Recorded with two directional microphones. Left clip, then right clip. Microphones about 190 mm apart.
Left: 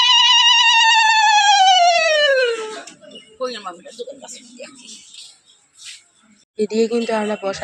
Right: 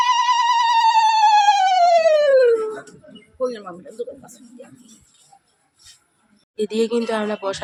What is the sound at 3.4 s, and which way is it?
Bird, 55° right (ahead or behind).